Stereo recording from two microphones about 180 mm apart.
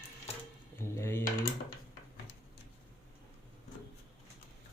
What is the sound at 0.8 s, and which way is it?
Speech, 15° left (ahead or behind).